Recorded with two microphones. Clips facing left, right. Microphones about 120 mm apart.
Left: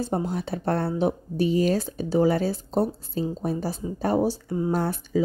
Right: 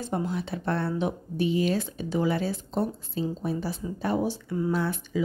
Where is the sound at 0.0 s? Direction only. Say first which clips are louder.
Left 3 dB; 40° left (ahead or behind).